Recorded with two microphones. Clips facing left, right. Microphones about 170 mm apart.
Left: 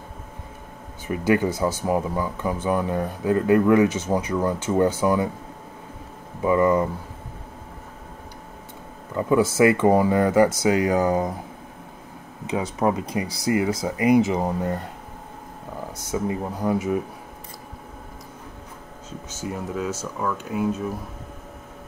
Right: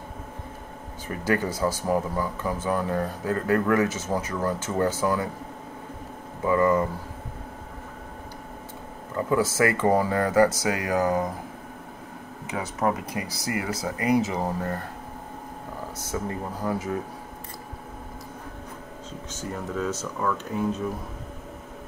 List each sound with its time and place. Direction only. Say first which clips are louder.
1.0 s speech: left 5 dB; 15° left (ahead or behind)
6.4 s speech: left 2 dB; 20° left (ahead or behind)
9.1 s speech: left 4 dB; 15° left (ahead or behind)
12.4 s speech: left 4 dB; 20° left (ahead or behind)
16.1 s speech: left 5 dB; 15° left (ahead or behind)
19.5 s speech: left 1 dB; 10° left (ahead or behind)